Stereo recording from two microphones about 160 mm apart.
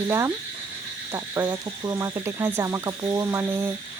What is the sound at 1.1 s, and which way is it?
Speech, 20° right (ahead or behind).